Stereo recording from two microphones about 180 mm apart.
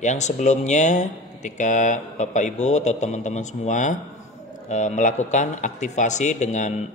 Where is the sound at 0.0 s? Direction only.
40° left (ahead or behind).